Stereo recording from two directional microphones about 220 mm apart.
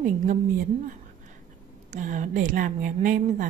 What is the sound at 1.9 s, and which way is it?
A woman's voice, 35° right (ahead or behind).